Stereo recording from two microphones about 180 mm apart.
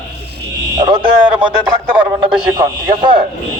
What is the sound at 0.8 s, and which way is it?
A man's voice, 25° right (ahead or behind).